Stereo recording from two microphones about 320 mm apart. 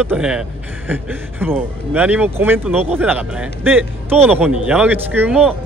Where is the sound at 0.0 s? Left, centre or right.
Centre.